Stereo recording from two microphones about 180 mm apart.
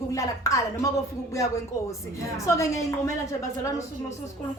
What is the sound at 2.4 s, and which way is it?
Speech, 15° left (ahead or behind).